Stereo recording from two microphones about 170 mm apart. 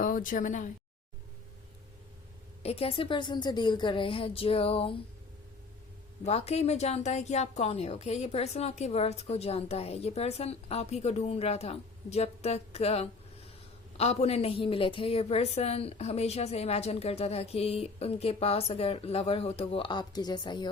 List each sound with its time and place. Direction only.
0.0 s speech: 50° left (ahead or behind)
2.6 s a woman's voice: 35° left (ahead or behind)
6.2 s a woman's voice: 40° left (ahead or behind)